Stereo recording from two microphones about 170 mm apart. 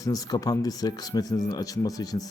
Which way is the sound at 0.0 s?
20° left (ahead or behind).